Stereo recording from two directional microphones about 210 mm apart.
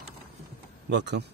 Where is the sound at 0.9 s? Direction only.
55° right (ahead or behind).